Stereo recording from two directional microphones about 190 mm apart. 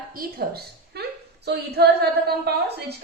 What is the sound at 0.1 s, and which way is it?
A woman's voice, 50° right (ahead or behind).